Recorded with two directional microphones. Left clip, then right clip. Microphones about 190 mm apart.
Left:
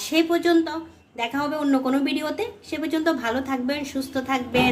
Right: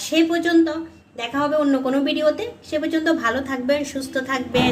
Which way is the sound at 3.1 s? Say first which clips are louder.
Right 1 dB; 15° left (ahead or behind).